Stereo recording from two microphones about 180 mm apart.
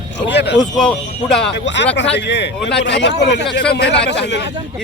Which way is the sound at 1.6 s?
75° left (ahead or behind).